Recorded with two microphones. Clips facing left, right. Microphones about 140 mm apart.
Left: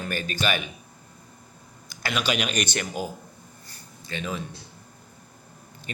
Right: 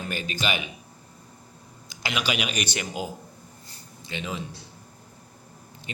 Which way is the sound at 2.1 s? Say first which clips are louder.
Left 2 dB; 10° right (ahead or behind).